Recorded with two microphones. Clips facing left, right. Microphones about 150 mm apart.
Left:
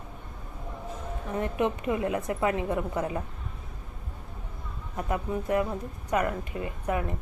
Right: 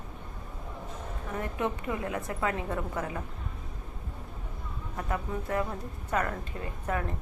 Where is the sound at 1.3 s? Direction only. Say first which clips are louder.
Left 4 dB; 20° left (ahead or behind).